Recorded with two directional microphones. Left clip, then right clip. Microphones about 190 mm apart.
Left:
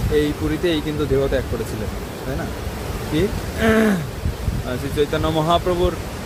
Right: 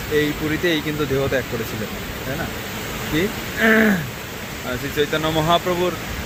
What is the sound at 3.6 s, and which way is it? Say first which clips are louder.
Speech: right 2 dB; 5° left (ahead or behind).